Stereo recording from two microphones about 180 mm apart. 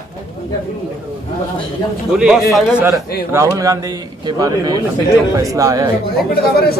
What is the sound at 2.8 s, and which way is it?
A man's voice, 15° right (ahead or behind).